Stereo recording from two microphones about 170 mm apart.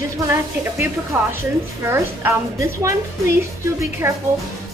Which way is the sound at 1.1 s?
10° right (ahead or behind).